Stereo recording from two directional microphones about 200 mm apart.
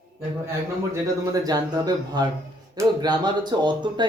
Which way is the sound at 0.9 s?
20° right (ahead or behind).